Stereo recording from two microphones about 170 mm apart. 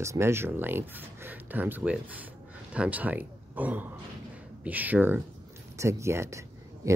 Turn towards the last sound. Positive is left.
turn(degrees=-20)  # may be behind; listen again after turning